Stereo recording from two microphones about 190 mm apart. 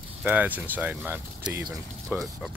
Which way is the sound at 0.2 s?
10° right (ahead or behind).